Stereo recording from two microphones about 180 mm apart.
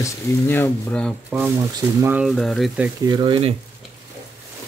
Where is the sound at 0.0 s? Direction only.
10° left (ahead or behind).